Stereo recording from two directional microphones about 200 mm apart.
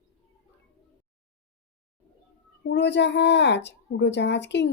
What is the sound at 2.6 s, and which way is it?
A woman's voice, 60° left (ahead or behind).